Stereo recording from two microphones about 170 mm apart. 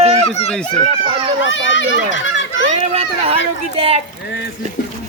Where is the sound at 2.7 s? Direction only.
35° right (ahead or behind).